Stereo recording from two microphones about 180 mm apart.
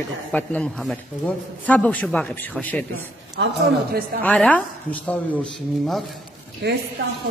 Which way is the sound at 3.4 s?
90° right.